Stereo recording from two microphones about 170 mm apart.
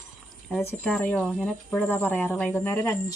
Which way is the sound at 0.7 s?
10° left (ahead or behind).